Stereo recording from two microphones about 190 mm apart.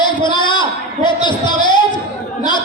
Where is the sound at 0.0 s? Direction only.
25° left (ahead or behind).